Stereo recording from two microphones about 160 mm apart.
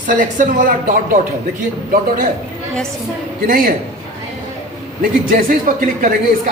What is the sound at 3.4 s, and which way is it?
Speech, 60° right (ahead or behind).